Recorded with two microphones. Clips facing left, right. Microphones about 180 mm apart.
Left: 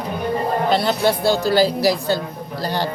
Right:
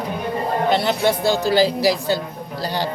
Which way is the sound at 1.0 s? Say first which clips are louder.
Left 1 dB; 15° right (ahead or behind).